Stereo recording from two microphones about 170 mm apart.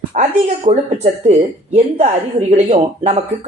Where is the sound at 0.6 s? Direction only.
40° right (ahead or behind).